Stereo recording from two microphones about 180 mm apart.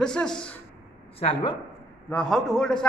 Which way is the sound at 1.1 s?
30° left (ahead or behind).